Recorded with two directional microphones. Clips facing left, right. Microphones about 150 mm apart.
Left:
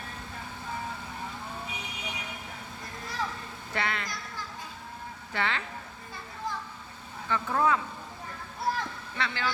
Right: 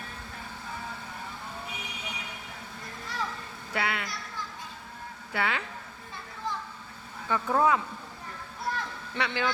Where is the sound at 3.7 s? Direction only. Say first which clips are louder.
Right 1 dB; 10° right (ahead or behind).